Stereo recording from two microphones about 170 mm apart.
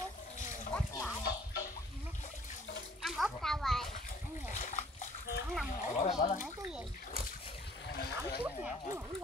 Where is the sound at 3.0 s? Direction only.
Centre (ahead or behind).